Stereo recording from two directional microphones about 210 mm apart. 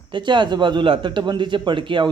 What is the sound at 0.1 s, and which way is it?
A man's voice, 20° right (ahead or behind).